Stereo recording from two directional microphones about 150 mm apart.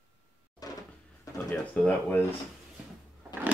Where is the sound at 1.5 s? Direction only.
10° left (ahead or behind).